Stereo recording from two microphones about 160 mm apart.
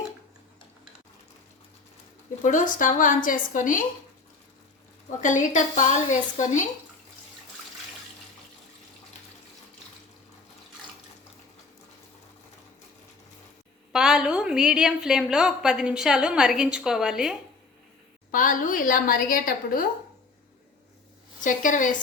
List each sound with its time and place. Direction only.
2.4 s a woman's voice: 55° left (ahead or behind)
5.2 s a woman's voice: 50° left (ahead or behind)
13.9 s a woman's voice: 5° right (ahead or behind)
18.3 s a woman's voice: 55° left (ahead or behind)
21.4 s a woman's voice: 55° left (ahead or behind)